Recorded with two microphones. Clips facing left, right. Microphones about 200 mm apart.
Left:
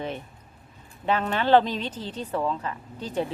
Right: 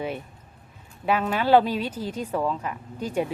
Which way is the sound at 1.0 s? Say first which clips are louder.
Right 1 dB; 10° right (ahead or behind).